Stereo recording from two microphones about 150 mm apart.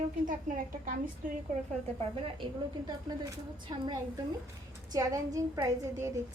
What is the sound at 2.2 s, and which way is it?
A woman's voice, 35° right (ahead or behind).